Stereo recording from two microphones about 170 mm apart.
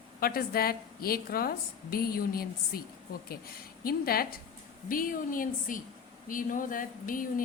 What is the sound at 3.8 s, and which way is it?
A woman's voice, 60° left (ahead or behind).